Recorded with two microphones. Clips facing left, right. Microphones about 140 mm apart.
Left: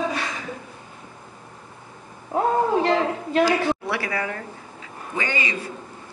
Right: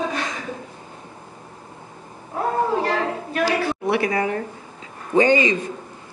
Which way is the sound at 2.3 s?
25° left (ahead or behind).